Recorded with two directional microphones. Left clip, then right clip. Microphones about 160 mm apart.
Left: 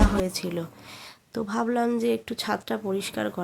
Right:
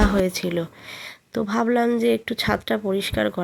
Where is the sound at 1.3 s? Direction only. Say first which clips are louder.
Right 5 dB; 20° right (ahead or behind).